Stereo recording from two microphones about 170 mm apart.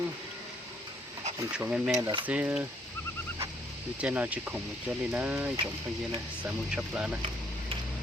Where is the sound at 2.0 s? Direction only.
20° right (ahead or behind).